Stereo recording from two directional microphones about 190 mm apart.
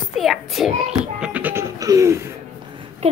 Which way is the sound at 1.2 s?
10° right (ahead or behind).